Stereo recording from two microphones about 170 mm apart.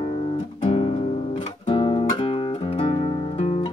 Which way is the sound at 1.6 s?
30° left (ahead or behind).